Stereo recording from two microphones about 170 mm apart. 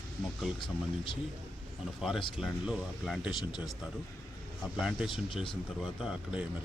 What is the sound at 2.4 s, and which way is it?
Speech, centre (ahead or behind).